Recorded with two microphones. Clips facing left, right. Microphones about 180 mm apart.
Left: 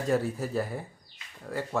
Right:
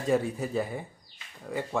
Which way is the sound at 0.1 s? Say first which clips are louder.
Right 2 dB; centre (ahead or behind).